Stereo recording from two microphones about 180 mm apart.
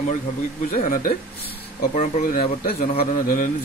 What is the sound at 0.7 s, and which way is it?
A man's voice, 50° left (ahead or behind).